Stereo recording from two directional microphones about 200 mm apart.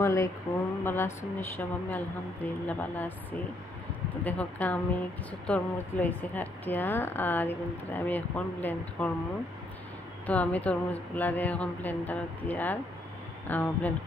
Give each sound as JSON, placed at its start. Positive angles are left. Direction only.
{"t": 0.0, "sound": "a woman's voice", "side_deg": 15}
{"t": 4.2, "sound": "a woman's voice", "side_deg": 10}
{"t": 10.2, "sound": "a woman's voice", "side_deg": 5}